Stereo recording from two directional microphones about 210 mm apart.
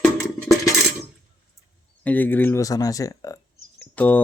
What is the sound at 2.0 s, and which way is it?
Speech, 10° left (ahead or behind).